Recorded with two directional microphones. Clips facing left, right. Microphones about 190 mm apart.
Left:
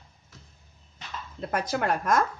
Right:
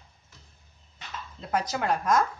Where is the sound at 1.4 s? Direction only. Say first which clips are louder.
Left 1 dB; 55° left (ahead or behind).